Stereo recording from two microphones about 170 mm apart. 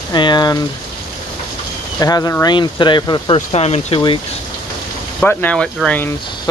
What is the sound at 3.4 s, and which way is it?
Speech, 40° left (ahead or behind).